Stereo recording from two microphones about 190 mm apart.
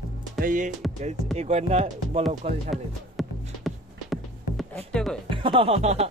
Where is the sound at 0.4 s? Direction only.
45° right (ahead or behind).